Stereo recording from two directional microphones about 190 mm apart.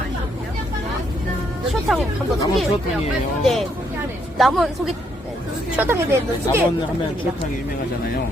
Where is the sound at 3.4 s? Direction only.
Centre (ahead or behind).